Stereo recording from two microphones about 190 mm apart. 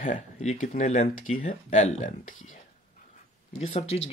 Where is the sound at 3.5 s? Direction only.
35° left (ahead or behind).